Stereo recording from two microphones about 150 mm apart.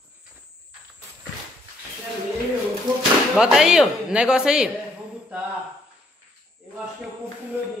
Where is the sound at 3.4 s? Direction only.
5° right (ahead or behind).